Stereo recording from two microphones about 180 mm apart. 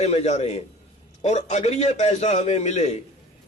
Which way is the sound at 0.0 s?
40° left (ahead or behind).